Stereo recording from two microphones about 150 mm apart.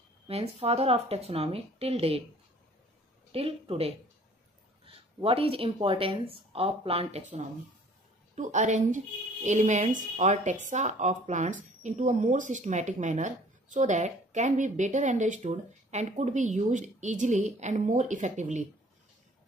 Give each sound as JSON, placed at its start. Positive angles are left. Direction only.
{"t": 0.3, "sound": "speech", "side_deg": -40}
{"t": 3.3, "sound": "a woman's voice", "side_deg": -40}